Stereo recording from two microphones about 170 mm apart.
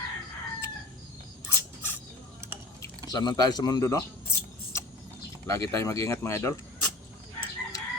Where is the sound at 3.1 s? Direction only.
25° left (ahead or behind).